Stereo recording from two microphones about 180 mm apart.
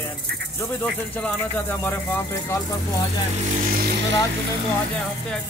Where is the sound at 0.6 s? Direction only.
10° left (ahead or behind).